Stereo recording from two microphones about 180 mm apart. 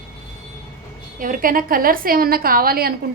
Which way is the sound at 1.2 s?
50° right (ahead or behind).